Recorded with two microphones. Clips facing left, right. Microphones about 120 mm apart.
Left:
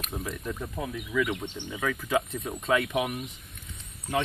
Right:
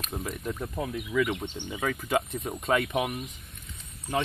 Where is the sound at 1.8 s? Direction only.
30° right (ahead or behind).